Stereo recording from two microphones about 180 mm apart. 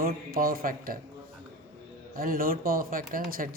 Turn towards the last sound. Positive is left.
turn(degrees=-50)  # may be behind; listen again after turning